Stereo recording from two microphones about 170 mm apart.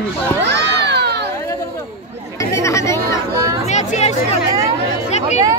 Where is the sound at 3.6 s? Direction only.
40° left (ahead or behind).